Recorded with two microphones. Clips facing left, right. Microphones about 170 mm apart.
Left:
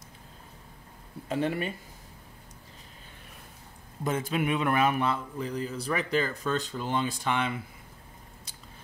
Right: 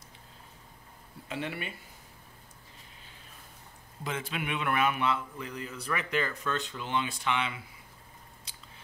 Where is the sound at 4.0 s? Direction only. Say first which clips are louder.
Left 7 dB; 45° left (ahead or behind).